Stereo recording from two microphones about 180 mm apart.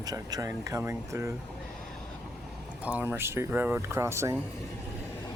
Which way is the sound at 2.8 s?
10° right (ahead or behind).